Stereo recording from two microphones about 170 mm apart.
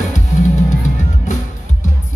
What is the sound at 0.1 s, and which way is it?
Music, 45° left (ahead or behind).